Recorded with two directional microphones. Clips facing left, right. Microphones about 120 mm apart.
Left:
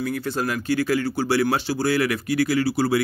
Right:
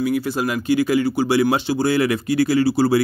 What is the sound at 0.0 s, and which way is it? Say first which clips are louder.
Speech: right 5 dB; 10° right (ahead or behind).